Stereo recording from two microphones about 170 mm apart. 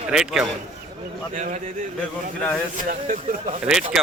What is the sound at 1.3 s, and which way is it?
Speech, 45° right (ahead or behind).